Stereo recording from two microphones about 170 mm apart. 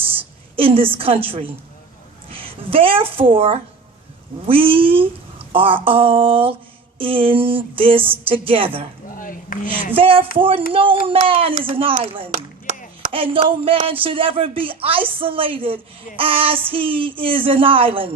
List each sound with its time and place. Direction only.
0.5 s a woman's voice: 35° right (ahead or behind)
9.0 s speech: 55° left (ahead or behind)
9.9 s speech: 30° right (ahead or behind)
12.7 s a sound: 50° right (ahead or behind)
13.1 s speech: 30° right (ahead or behind)